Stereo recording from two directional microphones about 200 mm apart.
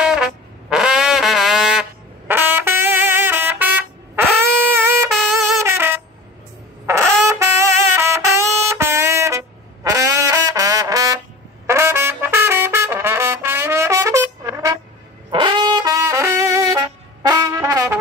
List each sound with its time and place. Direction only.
0.0 s brass instrument: 5° right (ahead or behind)
5.6 s a sound: 10° right (ahead or behind)
6.9 s music: 15° right (ahead or behind)
9.8 s brass instrument: 15° right (ahead or behind)
11.6 s trumpet: 15° right (ahead or behind)
15.3 s brass instrument: 25° right (ahead or behind)